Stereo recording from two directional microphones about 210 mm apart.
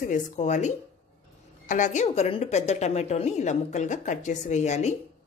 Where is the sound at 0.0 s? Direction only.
35° left (ahead or behind).